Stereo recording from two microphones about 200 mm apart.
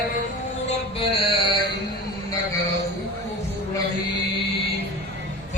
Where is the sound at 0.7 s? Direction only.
30° left (ahead or behind).